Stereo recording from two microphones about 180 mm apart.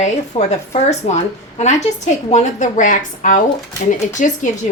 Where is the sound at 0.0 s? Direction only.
35° left (ahead or behind).